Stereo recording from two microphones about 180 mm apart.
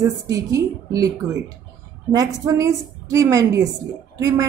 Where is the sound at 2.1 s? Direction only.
20° right (ahead or behind).